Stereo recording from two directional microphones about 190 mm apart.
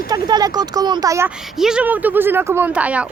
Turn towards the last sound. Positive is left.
turn(degrees=-5)  # may be behind; listen again after turning